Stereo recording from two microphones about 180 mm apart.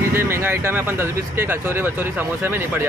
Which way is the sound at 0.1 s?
15° right (ahead or behind).